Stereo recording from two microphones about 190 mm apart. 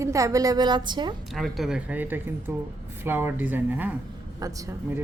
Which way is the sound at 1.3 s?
Centre (ahead or behind).